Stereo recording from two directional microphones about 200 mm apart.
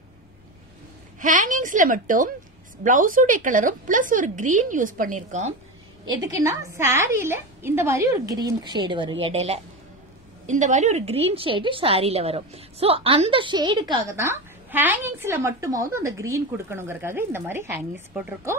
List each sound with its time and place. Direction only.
1.2 s a woman's voice: 40° right (ahead or behind)
6.0 s a woman's voice: 20° right (ahead or behind)
14.1 s a woman's voice: 10° right (ahead or behind)